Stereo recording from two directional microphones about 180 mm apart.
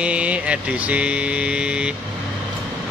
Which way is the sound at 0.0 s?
5° right (ahead or behind).